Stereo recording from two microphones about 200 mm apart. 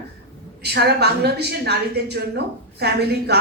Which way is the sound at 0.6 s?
55° right (ahead or behind).